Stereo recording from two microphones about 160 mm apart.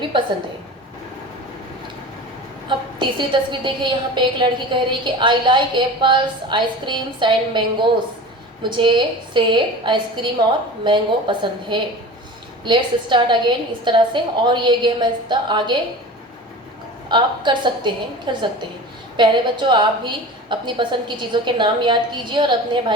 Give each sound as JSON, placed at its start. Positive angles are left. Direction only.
{"t": 2.6, "sound": "a woman's voice", "side_deg": -30}
{"t": 17.1, "sound": "a woman's voice", "side_deg": -30}